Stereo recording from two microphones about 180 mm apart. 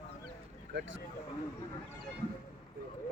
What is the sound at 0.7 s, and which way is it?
Speech, 90° right.